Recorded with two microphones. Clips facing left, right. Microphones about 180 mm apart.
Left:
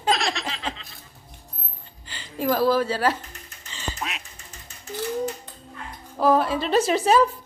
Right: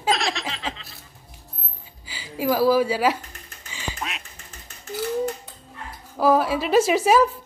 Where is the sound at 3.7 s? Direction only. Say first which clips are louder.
Even; 10° right (ahead or behind).